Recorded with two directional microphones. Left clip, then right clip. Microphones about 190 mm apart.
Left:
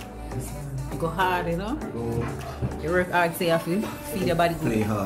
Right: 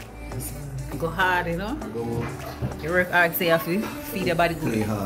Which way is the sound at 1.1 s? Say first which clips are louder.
Right 2 dB; 5° left (ahead or behind).